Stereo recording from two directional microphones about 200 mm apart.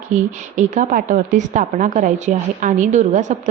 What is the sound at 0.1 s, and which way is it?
A woman's voice, 40° right (ahead or behind).